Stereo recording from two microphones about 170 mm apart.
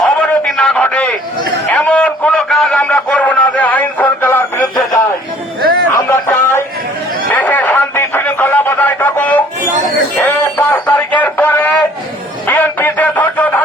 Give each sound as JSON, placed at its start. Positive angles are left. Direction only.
{"t": 0.0, "sound": "a sound", "side_deg": 0}
{"t": 10.2, "sound": "synthetic singing", "side_deg": 10}
{"t": 12.5, "sound": "music", "side_deg": 10}